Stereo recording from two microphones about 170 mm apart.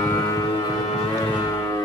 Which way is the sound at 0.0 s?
20° left (ahead or behind).